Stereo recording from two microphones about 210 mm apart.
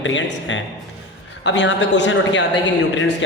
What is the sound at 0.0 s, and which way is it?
A woman's voice, 65° left (ahead or behind).